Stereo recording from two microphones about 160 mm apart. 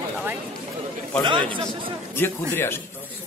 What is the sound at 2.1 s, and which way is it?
Speech, 15° left (ahead or behind).